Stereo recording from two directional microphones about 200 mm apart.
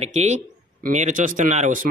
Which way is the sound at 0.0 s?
35° right (ahead or behind).